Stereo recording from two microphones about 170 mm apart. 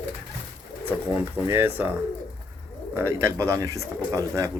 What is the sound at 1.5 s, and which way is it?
Speech, 15° right (ahead or behind).